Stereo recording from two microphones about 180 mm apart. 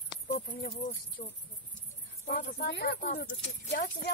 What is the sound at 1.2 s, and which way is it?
Speech, 40° left (ahead or behind).